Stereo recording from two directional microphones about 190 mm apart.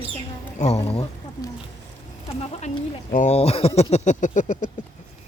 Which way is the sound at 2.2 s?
35° left (ahead or behind).